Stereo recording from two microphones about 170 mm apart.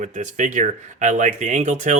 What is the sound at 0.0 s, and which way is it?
Speech, 45° right (ahead or behind).